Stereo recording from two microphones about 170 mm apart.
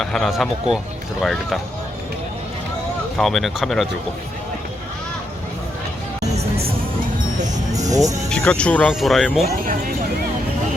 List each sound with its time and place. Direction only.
0.0 s speech: centre (ahead or behind)
3.2 s speech: centre (ahead or behind)
7.8 s speech: 20° right (ahead or behind)
8.3 s speech: 5° left (ahead or behind)